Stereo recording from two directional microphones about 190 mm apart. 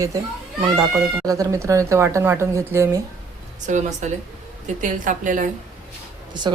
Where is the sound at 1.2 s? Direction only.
20° right (ahead or behind).